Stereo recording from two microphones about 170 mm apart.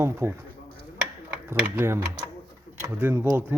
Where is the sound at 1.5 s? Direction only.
10° right (ahead or behind).